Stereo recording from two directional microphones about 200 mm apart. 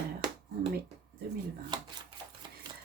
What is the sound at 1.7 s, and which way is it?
Speech, 20° right (ahead or behind).